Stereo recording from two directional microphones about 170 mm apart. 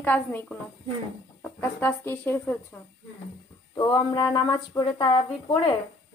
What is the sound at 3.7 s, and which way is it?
Speech, 25° left (ahead or behind).